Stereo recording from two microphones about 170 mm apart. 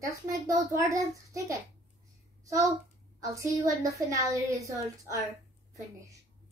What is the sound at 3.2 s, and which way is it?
A child's voice, 20° right (ahead or behind).